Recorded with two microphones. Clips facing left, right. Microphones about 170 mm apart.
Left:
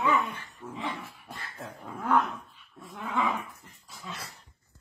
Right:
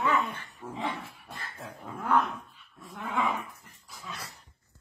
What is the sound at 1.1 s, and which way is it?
Dog, centre (ahead or behind).